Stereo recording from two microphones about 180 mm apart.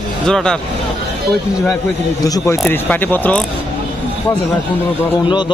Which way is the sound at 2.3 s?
20° left (ahead or behind).